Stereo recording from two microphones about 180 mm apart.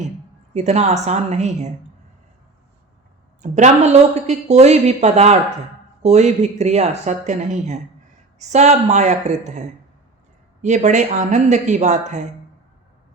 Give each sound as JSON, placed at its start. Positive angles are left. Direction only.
{"t": 0.5, "sound": "speech", "side_deg": -40}
{"t": 3.4, "sound": "speech", "side_deg": -40}